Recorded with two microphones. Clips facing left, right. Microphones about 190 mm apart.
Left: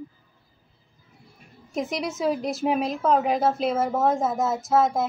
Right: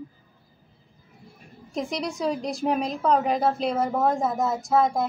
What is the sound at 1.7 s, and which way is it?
A woman's voice, centre (ahead or behind).